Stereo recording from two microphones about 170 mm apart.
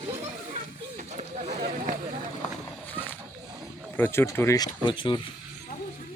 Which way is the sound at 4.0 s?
15° left (ahead or behind).